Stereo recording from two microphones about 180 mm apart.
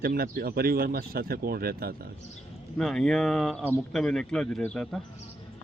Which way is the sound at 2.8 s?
Centre (ahead or behind).